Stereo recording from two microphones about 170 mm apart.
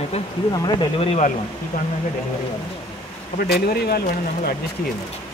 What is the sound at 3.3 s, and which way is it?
Speech, 65° left (ahead or behind).